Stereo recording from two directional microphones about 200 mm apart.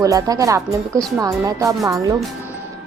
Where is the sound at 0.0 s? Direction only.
15° right (ahead or behind).